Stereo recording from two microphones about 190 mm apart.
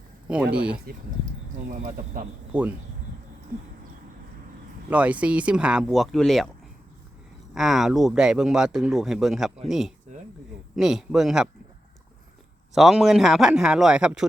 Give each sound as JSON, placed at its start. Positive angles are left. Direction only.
{"t": 0.5, "sound": "speech", "side_deg": -5}
{"t": 0.9, "sound": "speech", "side_deg": -45}
{"t": 2.5, "sound": "speech", "side_deg": -5}
{"t": 4.9, "sound": "speech", "side_deg": -5}
{"t": 7.5, "sound": "speech", "side_deg": 0}
{"t": 12.7, "sound": "speech", "side_deg": 0}